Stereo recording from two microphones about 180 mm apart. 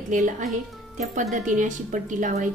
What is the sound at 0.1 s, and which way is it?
A woman's voice, 40° right (ahead or behind).